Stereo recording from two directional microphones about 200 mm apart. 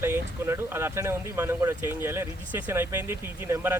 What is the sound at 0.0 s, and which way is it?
Speech, 10° right (ahead or behind).